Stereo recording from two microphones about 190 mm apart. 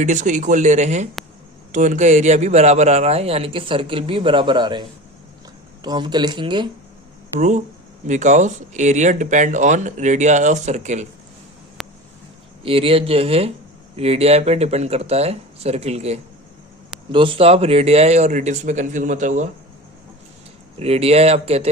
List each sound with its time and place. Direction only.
0.0 s a man's voice: 40° right (ahead or behind)
7.3 s a man's voice: 40° right (ahead or behind)
11.8 s a sound: centre (ahead or behind)
12.6 s a man's voice: 30° right (ahead or behind)
20.7 s a man's voice: 30° right (ahead or behind)